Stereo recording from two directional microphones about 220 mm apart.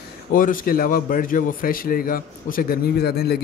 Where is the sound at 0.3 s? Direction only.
40° left (ahead or behind).